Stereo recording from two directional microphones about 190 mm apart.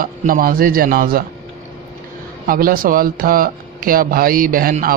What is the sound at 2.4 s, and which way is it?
Speech, 50° right (ahead or behind).